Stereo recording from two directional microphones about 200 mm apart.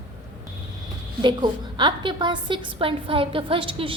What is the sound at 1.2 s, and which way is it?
A woman's voice, 25° right (ahead or behind).